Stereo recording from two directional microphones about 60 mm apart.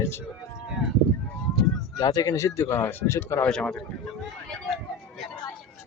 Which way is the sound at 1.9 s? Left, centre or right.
Left.